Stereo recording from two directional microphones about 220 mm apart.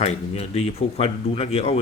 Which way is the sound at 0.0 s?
30° left (ahead or behind).